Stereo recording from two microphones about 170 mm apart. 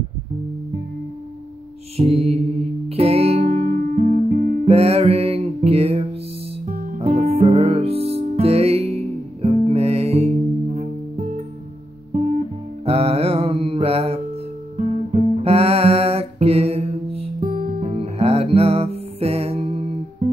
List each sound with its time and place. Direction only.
2.0 s mantra: 35° right (ahead or behind)
3.0 s music: 35° right (ahead or behind)
12.1 s music: 40° right (ahead or behind)
17.4 s music: 55° right (ahead or behind)
17.8 s music: 35° right (ahead or behind)